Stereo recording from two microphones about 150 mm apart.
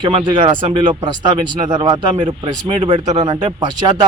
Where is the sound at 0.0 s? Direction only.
30° right (ahead or behind).